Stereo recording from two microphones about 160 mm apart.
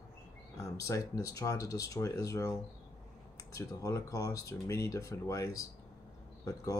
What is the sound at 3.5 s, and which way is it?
Speech, 20° left (ahead or behind).